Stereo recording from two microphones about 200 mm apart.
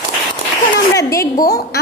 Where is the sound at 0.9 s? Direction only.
15° left (ahead or behind).